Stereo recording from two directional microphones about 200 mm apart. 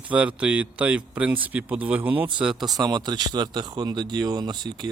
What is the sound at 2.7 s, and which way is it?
Speech, 20° right (ahead or behind).